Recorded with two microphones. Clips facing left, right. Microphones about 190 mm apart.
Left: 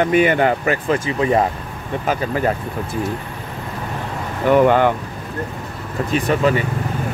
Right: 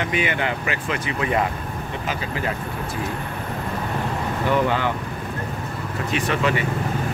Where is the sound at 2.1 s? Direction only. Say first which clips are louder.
Left 8 dB; 45° left (ahead or behind).